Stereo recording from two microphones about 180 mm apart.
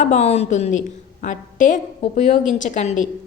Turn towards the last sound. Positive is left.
turn(degrees=40)  # may be behind; listen again after turning